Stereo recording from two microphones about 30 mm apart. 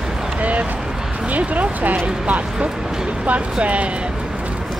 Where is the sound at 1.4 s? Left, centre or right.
Right.